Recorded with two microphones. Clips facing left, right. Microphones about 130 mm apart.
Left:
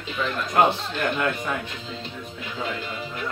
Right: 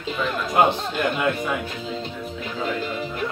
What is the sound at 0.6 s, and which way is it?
Speech, 15° right (ahead or behind).